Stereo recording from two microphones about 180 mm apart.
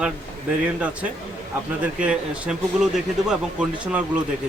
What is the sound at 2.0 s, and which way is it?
Speech, 5° right (ahead or behind).